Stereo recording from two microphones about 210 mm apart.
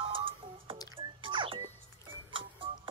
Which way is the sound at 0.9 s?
25° right (ahead or behind).